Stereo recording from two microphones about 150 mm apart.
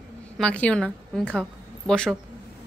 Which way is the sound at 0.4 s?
10° left (ahead or behind).